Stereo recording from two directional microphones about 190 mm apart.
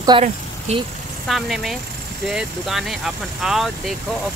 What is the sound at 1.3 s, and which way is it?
Speech, centre (ahead or behind).